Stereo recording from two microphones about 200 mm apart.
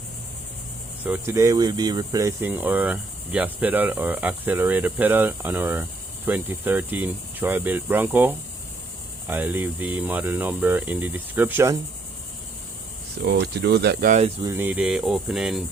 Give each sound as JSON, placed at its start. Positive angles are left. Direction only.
{"t": 1.0, "sound": "speech", "side_deg": -10}
{"t": 13.2, "sound": "speech", "side_deg": -55}
{"t": 14.1, "sound": "speech", "side_deg": -30}
{"t": 14.4, "sound": "cricket", "side_deg": -10}